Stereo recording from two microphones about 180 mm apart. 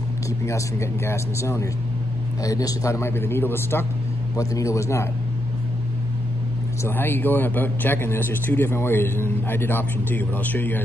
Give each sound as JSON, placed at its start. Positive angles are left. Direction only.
{"t": 0.5, "sound": "a man's voice", "side_deg": 15}
{"t": 6.8, "sound": "a man's voice", "side_deg": 10}